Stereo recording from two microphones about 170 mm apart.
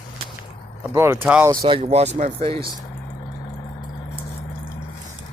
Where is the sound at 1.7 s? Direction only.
35° right (ahead or behind).